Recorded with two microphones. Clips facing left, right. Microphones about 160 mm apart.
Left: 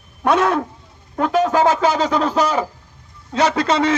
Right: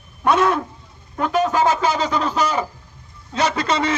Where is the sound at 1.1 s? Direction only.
90° left.